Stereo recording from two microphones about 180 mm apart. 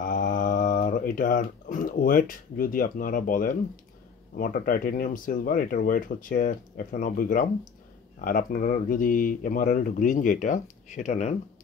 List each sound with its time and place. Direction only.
0.0 s speech: 50° left (ahead or behind)